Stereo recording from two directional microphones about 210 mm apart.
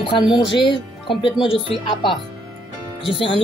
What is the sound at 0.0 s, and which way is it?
Speech, 25° left (ahead or behind).